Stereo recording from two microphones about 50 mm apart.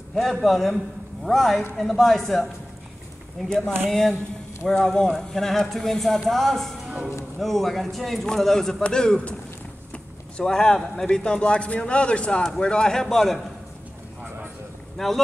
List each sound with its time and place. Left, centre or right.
0.1 s speech: centre
3.9 s a man's voice: centre
10.3 s a man's voice: centre
15.0 s speech: centre